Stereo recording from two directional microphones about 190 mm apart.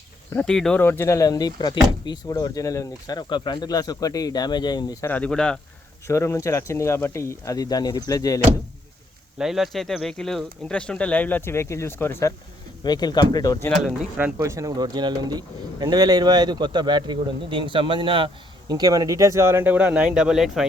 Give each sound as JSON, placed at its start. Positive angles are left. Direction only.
{"t": 0.3, "sound": "speech", "side_deg": 5}
{"t": 6.1, "sound": "speech", "side_deg": 15}
{"t": 9.4, "sound": "speech", "side_deg": 0}
{"t": 14.3, "sound": "speech", "side_deg": -15}